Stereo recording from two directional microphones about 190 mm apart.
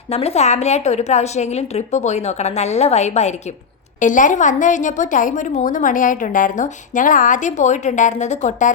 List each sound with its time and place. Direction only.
0.1 s a woman's voice: 30° left (ahead or behind)